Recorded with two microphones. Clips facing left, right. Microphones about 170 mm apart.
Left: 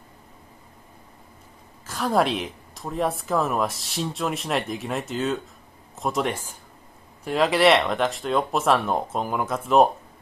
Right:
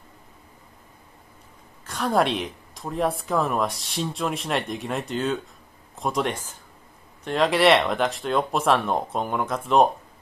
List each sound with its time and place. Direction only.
1.9 s speech: centre (ahead or behind)